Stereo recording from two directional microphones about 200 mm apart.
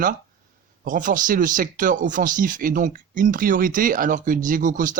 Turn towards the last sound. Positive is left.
turn(degrees=-40)  # may be behind; listen again after turning